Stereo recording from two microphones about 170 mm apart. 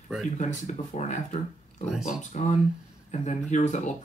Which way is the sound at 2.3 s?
40° left (ahead or behind).